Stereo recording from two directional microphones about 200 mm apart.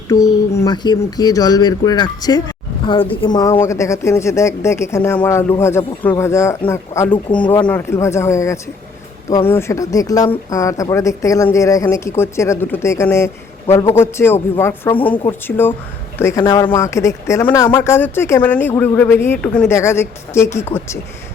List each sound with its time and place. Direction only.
0.1 s speech: 15° left (ahead or behind)
7.4 s speech: 25° left (ahead or behind)
7.7 s speech: 10° left (ahead or behind)